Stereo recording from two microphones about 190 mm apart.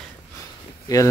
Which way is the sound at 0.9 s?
20° left (ahead or behind).